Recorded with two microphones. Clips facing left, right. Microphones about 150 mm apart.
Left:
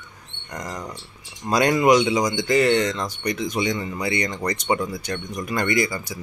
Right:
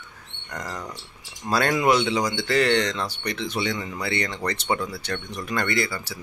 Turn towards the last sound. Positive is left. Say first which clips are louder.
# left 4 dB
turn(degrees=15)  # may be behind; listen again after turning